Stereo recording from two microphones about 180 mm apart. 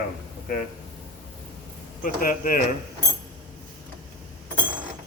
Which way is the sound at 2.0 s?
50° left (ahead or behind).